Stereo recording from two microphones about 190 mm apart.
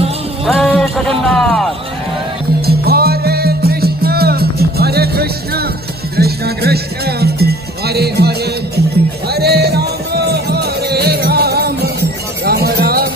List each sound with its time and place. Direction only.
0.5 s speech: centre (ahead or behind)
2.6 s music: 55° right (ahead or behind)